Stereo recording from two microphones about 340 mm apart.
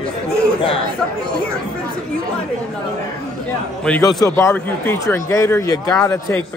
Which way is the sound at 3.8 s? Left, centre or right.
Centre.